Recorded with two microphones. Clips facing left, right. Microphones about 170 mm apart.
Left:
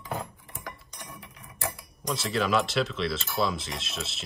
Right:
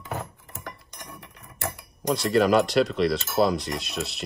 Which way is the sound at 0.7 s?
10° left (ahead or behind).